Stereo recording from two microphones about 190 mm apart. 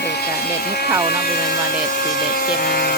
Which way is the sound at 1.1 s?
55° left (ahead or behind).